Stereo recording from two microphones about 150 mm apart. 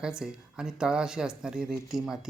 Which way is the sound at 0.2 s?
5° right (ahead or behind).